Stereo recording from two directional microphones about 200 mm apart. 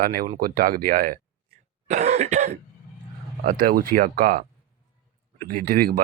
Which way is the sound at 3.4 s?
45° right (ahead or behind).